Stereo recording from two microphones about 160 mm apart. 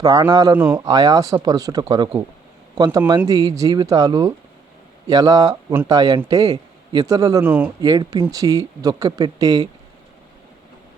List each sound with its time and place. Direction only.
0.0 s speech: 20° right (ahead or behind)
7.4 s speech: 10° right (ahead or behind)
7.8 s speech: 25° right (ahead or behind)